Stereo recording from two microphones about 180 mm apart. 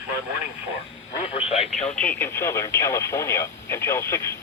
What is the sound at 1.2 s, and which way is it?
Radio, 35° left (ahead or behind).